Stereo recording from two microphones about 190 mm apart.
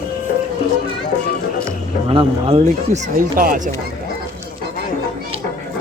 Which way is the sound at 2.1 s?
30° right (ahead or behind).